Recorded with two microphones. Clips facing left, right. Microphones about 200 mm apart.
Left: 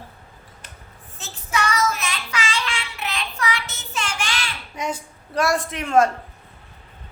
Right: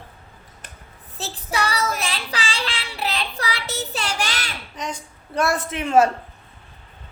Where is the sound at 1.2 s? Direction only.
35° right (ahead or behind).